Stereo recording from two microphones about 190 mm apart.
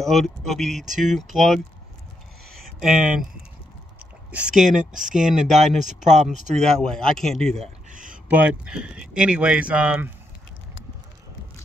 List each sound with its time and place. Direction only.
0.0 s speech: centre (ahead or behind)
2.5 s a sound: centre (ahead or behind)
4.0 s speech: 5° right (ahead or behind)
5.9 s speech: 40° right (ahead or behind)
6.8 s speech: 5° left (ahead or behind)
7.5 s a sound: 40° right (ahead or behind)
8.3 s speech: 10° right (ahead or behind)